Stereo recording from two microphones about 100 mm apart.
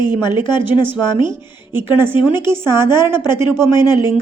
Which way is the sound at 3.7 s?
45° left (ahead or behind).